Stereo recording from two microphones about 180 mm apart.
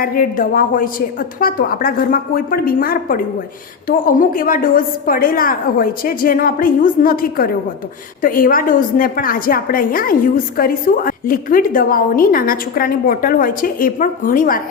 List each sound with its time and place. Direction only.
0.0 s a woman's voice: 50° left (ahead or behind)